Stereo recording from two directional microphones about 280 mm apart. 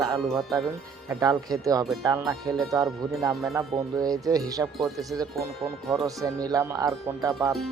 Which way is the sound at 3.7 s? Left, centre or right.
Centre.